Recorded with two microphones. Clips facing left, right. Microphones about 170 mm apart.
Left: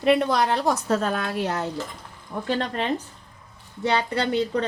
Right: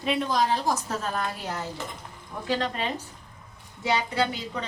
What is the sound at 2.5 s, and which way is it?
Speech, 55° left (ahead or behind).